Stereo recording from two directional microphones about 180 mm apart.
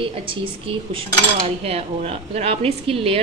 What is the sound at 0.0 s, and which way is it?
A woman's voice, 30° right (ahead or behind).